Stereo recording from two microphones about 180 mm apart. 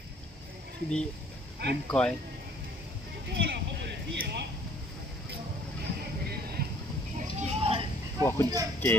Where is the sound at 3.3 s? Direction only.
70° right (ahead or behind).